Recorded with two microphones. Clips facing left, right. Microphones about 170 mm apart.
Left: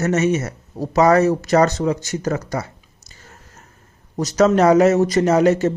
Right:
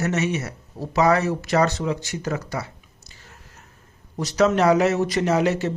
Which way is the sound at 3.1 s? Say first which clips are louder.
Left 4 dB; 45° left (ahead or behind).